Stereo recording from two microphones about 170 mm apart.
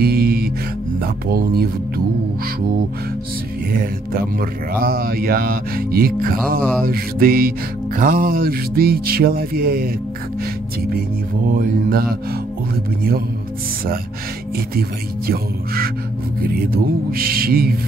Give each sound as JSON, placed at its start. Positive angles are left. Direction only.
{"t": 0.0, "sound": "music", "side_deg": -65}
{"t": 3.7, "sound": "music", "side_deg": -60}
{"t": 11.5, "sound": "music", "side_deg": -60}
{"t": 14.8, "sound": "music", "side_deg": -60}
{"t": 17.1, "sound": "music", "side_deg": -60}